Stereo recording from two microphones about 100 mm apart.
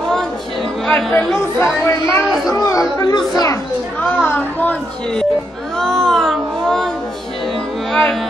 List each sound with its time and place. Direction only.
0.8 s speech: 5° left (ahead or behind)
1.4 s speech: 30° left (ahead or behind)
4.0 s chatter: 20° left (ahead or behind)
5.8 s a sound: 5° left (ahead or behind)